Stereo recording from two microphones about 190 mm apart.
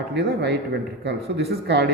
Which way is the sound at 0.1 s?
65° right (ahead or behind).